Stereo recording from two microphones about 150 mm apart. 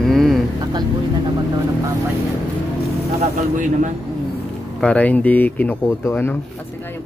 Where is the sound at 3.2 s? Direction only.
55° right (ahead or behind).